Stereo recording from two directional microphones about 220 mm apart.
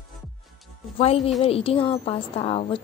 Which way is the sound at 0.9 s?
25° left (ahead or behind).